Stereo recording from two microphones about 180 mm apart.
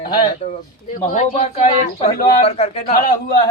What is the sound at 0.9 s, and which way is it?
A man's voice, 45° left (ahead or behind).